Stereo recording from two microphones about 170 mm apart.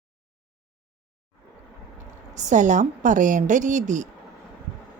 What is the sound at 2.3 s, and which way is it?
A woman's voice, 45° right (ahead or behind).